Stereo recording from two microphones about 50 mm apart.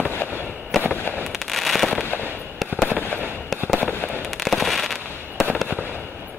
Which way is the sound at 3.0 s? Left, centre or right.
Left.